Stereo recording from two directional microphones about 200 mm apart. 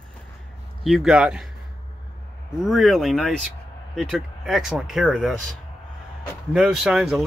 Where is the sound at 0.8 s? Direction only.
Centre (ahead or behind).